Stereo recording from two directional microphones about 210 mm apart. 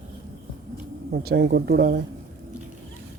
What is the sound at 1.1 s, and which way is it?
Speech, 50° right (ahead or behind).